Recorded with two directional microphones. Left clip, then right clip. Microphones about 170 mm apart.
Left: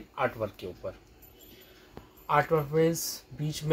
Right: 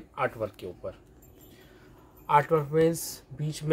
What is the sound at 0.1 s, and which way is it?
Speech, 30° right (ahead or behind).